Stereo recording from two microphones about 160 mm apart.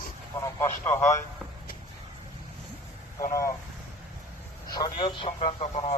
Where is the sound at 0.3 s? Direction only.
15° left (ahead or behind).